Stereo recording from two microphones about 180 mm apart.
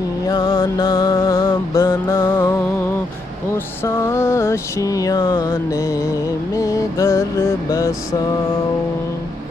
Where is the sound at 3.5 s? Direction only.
15° left (ahead or behind).